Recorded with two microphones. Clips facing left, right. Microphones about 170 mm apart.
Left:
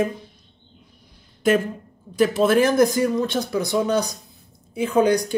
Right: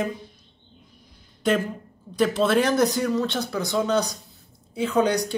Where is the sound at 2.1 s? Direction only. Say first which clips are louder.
Left 3 dB; 10° left (ahead or behind).